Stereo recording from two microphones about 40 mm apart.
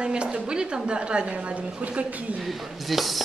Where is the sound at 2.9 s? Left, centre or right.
Centre.